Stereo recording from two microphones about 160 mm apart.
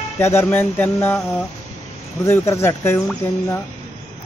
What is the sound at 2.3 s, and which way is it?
Speech, 15° left (ahead or behind).